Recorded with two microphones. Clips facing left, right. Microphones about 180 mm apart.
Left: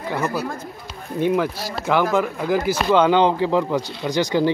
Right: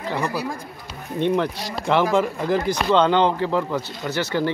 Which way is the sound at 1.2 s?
5° left (ahead or behind).